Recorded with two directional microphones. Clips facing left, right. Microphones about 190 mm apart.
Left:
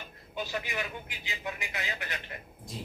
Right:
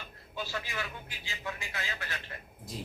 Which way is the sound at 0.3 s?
20° left (ahead or behind).